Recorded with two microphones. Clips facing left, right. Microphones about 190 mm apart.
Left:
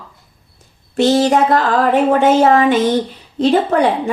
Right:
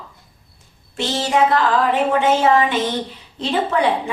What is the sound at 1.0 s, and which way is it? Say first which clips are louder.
A woman's voice: left 6 dB; 45° left (ahead or behind).